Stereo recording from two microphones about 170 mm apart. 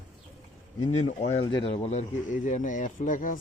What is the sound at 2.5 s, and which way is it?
Speech, 50° left (ahead or behind).